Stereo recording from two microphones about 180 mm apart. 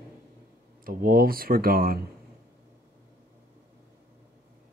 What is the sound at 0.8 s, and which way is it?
Speech, 50° right (ahead or behind).